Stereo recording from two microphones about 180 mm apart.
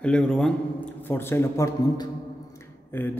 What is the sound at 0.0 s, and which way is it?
A man's voice, 5° left (ahead or behind).